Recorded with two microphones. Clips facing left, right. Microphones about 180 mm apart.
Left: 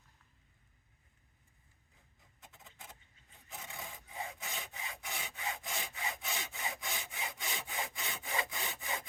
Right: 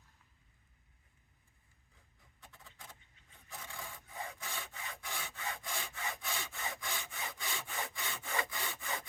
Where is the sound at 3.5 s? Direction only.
20° left (ahead or behind).